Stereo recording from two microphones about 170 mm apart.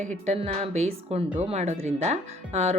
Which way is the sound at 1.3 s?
5° right (ahead or behind).